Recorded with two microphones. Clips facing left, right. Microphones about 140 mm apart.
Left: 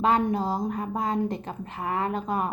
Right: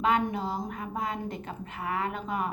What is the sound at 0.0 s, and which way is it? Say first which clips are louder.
A woman's voice: left 4 dB; 40° left (ahead or behind).